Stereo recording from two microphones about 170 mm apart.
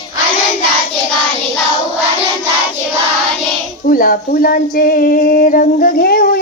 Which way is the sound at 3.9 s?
55° left (ahead or behind).